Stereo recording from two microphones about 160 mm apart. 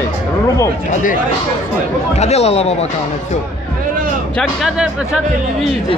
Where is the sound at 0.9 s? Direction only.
55° left (ahead or behind).